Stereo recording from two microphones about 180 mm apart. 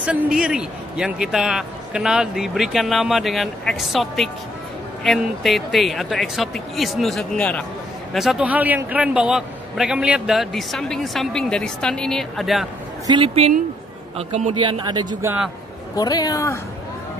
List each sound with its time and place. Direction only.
0.0 s a man's voice: 5° right (ahead or behind)
13.0 s a man's voice: 25° right (ahead or behind)
14.6 s speech: 25° right (ahead or behind)
15.2 s speech: 5° right (ahead or behind)
16.0 s speech: 20° left (ahead or behind)